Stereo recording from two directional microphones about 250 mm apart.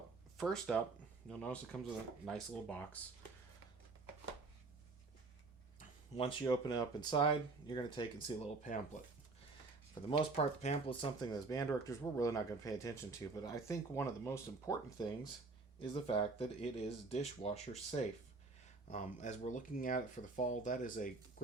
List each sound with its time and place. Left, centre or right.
0.3 s speech: centre
6.5 s speech: centre
9.9 s speech: left